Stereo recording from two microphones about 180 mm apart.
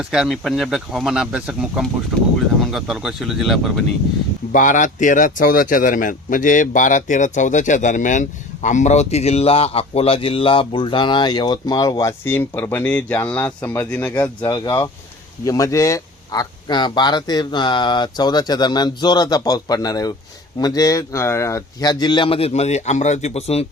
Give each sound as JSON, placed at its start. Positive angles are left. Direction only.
{"t": 0.0, "sound": "speech", "side_deg": -5}
{"t": 4.5, "sound": "speech", "side_deg": 45}